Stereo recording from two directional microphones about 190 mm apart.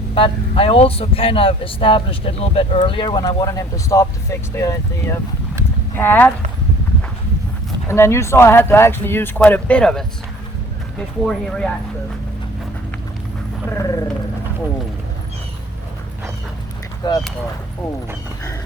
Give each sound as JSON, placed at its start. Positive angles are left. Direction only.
{"t": 0.1, "sound": "speech", "side_deg": 30}
{"t": 7.9, "sound": "speech", "side_deg": 15}
{"t": 13.7, "sound": "speech", "side_deg": 15}
{"t": 17.0, "sound": "speech", "side_deg": 25}